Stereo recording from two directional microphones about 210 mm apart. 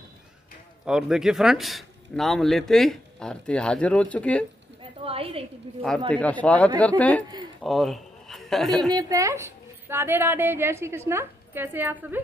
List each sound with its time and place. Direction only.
0.8 s speech: 5° right (ahead or behind)
5.0 s a woman's voice: 25° right (ahead or behind)
5.9 s speech: 5° left (ahead or behind)
8.9 s a woman's voice: 15° right (ahead or behind)